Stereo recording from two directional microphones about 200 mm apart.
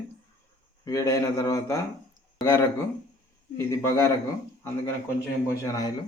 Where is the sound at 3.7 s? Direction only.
15° left (ahead or behind).